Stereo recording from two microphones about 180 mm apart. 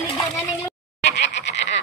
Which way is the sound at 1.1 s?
80° left.